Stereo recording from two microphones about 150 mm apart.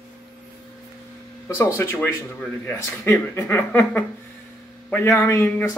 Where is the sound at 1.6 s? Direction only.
15° left (ahead or behind).